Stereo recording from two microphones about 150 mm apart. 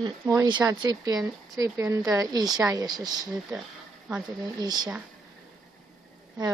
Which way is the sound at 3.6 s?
5° right (ahead or behind).